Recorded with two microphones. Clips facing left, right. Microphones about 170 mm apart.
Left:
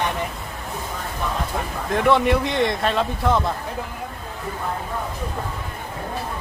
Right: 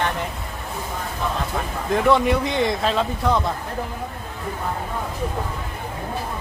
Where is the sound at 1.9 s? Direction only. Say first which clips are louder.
Even; centre (ahead or behind).